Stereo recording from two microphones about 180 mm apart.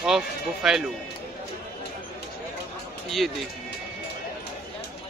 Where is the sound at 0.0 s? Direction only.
5° right (ahead or behind).